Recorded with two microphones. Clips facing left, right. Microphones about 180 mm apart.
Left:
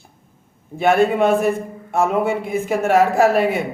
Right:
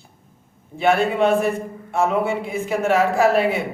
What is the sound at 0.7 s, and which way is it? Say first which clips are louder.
A man's voice: left 3 dB; 45° left (ahead or behind).